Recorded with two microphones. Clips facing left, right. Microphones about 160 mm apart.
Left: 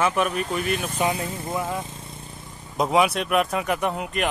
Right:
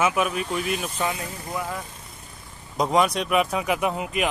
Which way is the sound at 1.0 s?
30° left (ahead or behind).